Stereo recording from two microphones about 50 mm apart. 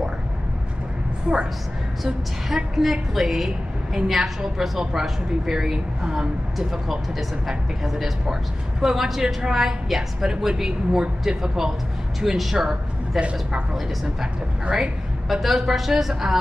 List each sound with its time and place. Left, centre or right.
1.3 s speech: centre
2.0 s a woman's voice: centre
13.2 s speech: right
14.7 s a woman's voice: centre